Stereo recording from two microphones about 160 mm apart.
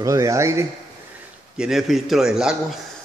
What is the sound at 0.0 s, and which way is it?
Speech, 20° right (ahead or behind).